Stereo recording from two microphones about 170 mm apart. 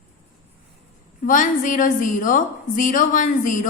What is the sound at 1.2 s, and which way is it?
A woman's voice, 50° left (ahead or behind).